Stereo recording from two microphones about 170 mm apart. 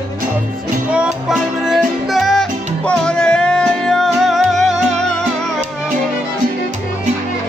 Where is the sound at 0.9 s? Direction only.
5° right (ahead or behind).